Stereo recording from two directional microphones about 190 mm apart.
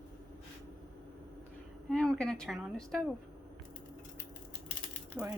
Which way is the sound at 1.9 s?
5° left (ahead or behind).